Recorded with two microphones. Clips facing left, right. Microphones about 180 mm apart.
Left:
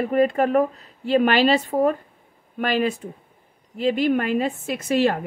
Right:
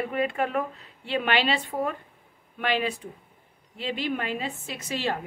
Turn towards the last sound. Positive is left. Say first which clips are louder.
# left 10 dB
turn(degrees=50)  # may be behind; listen again after turning